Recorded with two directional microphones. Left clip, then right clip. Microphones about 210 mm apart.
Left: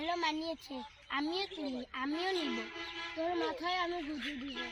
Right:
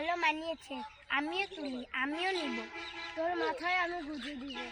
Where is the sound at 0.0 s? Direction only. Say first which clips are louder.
Right 3 dB; 15° right (ahead or behind).